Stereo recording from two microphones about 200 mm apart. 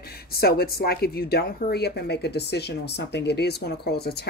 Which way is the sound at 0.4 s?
50° left (ahead or behind).